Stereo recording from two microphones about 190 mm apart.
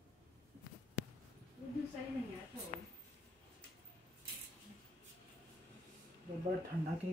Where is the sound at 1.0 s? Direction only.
55° left (ahead or behind).